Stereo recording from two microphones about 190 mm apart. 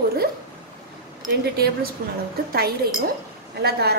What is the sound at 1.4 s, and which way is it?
Speech, 55° right (ahead or behind).